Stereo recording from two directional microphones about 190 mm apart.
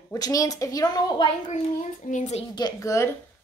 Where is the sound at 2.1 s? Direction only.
40° left (ahead or behind).